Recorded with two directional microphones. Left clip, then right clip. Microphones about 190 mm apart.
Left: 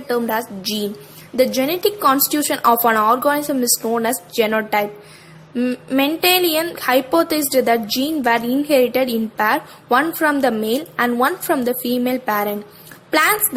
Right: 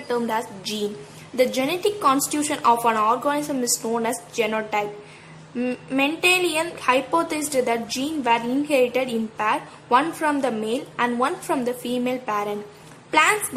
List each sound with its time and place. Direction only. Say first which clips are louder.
0.1 s a woman's voice: left 4 dB; 20° left (ahead or behind)